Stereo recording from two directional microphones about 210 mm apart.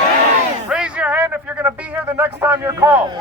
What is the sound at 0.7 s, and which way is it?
A man's voice, 5° right (ahead or behind).